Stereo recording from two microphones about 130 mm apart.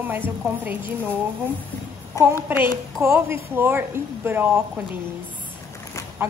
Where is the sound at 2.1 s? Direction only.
25° left (ahead or behind).